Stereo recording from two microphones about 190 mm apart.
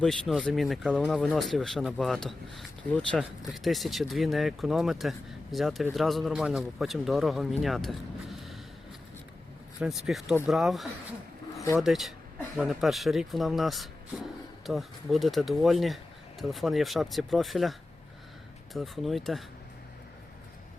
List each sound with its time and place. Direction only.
0.0 s speech: centre (ahead or behind)
10.1 s speech: centre (ahead or behind)